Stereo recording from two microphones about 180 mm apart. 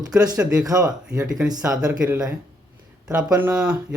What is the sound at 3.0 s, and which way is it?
Speech, 5° right (ahead or behind).